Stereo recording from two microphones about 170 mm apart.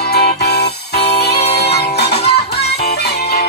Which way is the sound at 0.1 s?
70° left (ahead or behind).